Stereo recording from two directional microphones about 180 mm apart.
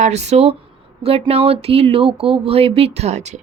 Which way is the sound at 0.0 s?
40° right (ahead or behind).